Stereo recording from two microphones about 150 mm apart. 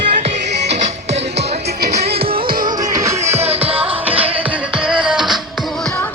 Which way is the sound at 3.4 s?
40° right (ahead or behind).